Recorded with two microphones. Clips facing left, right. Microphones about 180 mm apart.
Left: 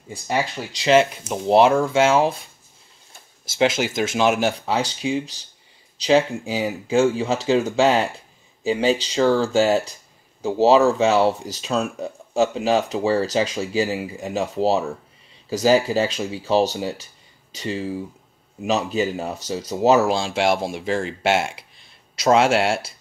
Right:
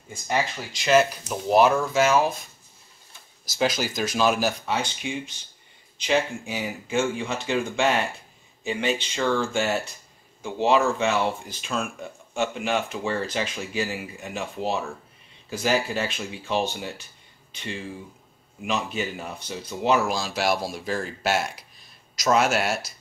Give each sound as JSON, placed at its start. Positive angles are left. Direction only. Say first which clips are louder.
{"t": 0.8, "sound": "speech", "louder": "left 3 dB", "side_deg": 25}
{"t": 3.6, "sound": "speech", "louder": "left 5 dB", "side_deg": 25}
{"t": 20.2, "sound": "speech", "louder": "left 5 dB", "side_deg": 25}